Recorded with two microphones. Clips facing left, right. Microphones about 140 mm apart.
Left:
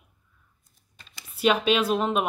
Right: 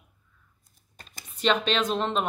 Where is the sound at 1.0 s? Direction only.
45° right (ahead or behind).